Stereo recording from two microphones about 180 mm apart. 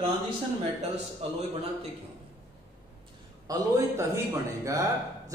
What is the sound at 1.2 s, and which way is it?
Speech, 35° right (ahead or behind).